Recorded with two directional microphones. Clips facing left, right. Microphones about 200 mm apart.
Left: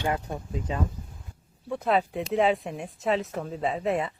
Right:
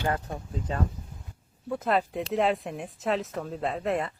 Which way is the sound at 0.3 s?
10° left (ahead or behind).